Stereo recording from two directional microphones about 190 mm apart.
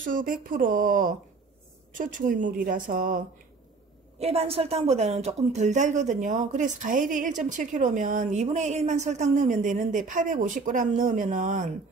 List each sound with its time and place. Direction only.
0.0 s a woman's voice: 45° right (ahead or behind)
4.2 s speech: 30° right (ahead or behind)